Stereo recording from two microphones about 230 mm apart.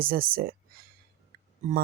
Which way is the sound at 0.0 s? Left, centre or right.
Right.